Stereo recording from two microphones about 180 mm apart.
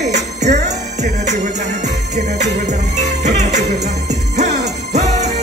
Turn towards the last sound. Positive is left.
turn(degrees=-40)  # may be behind; listen again after turning